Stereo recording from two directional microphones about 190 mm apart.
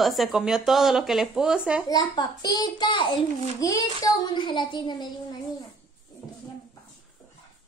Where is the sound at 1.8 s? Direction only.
20° left (ahead or behind).